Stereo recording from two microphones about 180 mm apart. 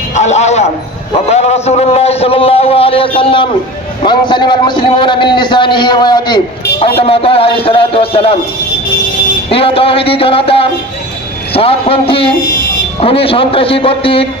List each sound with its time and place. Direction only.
0.1 s a sound: 40° left (ahead or behind)
4.0 s a man's voice: 25° left (ahead or behind)
9.5 s a man's voice: 30° left (ahead or behind)